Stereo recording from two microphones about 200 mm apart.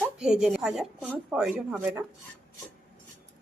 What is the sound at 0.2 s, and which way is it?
Speech, 5° right (ahead or behind).